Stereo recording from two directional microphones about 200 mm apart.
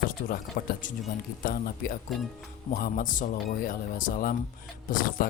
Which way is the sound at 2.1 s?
Centre (ahead or behind).